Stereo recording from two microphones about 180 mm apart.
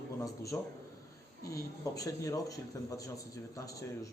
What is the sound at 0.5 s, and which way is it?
Speech, 10° left (ahead or behind).